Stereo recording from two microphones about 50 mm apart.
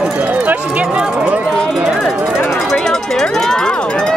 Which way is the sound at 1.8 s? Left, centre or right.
Centre.